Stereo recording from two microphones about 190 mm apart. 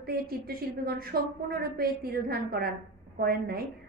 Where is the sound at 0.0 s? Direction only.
50° right (ahead or behind).